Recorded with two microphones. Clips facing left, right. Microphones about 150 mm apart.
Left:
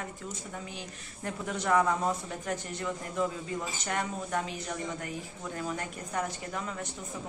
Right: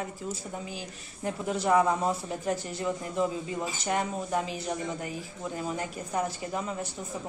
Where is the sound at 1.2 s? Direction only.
30° right (ahead or behind).